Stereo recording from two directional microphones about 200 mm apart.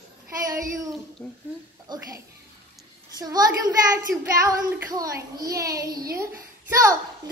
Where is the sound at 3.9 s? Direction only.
15° right (ahead or behind).